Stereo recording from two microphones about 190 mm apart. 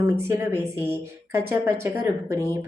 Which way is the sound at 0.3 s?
10° right (ahead or behind).